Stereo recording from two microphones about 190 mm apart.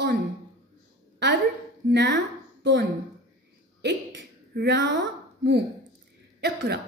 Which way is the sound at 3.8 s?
65° right (ahead or behind).